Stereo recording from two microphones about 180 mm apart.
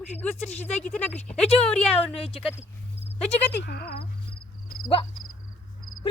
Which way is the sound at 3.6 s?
60° left (ahead or behind).